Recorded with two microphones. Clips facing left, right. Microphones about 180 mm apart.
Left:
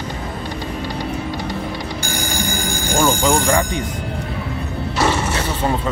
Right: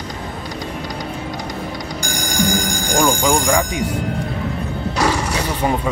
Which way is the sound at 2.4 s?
15° right (ahead or behind).